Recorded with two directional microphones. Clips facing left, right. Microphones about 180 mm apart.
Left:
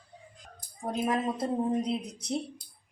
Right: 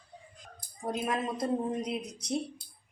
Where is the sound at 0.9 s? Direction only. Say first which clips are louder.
Left 3 dB; 25° left (ahead or behind).